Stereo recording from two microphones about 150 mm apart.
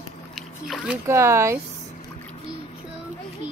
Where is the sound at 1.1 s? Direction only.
20° right (ahead or behind).